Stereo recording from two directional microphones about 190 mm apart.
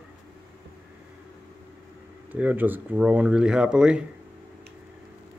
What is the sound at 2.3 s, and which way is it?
Speech, 10° right (ahead or behind).